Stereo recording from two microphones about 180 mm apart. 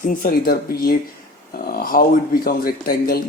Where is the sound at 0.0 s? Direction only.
50° left (ahead or behind).